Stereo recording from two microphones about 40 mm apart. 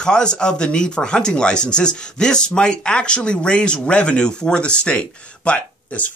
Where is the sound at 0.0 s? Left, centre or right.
Left.